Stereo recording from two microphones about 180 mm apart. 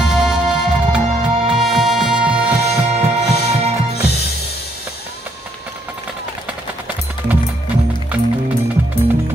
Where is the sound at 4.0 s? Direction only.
60° left (ahead or behind).